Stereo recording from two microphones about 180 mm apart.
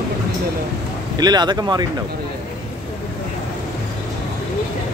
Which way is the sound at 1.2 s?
25° right (ahead or behind).